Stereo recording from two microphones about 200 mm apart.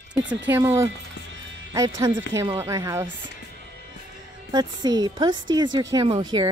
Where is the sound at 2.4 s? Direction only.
15° right (ahead or behind).